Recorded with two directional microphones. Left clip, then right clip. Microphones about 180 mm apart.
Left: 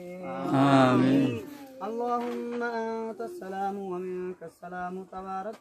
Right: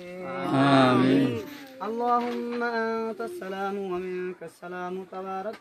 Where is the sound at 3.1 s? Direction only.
10° right (ahead or behind).